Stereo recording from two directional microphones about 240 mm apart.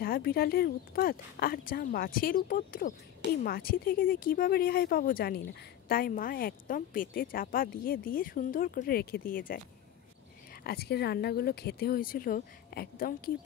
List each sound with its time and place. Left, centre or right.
0.0 s speech: left
10.6 s speech: left